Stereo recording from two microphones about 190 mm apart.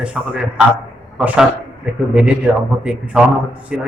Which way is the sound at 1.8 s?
5° right (ahead or behind).